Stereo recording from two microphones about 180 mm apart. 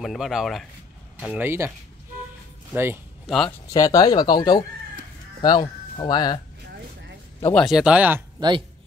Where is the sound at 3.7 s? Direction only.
20° left (ahead or behind).